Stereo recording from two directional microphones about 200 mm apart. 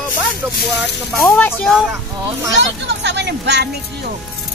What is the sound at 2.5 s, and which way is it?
Speech, 60° right (ahead or behind).